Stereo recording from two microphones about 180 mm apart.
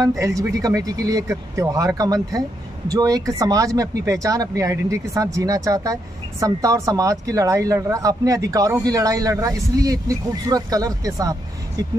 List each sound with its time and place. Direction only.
0.2 s speech: 20° right (ahead or behind)